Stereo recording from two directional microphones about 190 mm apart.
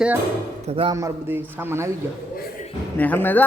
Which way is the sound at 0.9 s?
15° right (ahead or behind).